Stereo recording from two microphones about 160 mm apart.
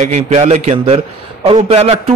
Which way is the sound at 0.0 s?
45° right (ahead or behind).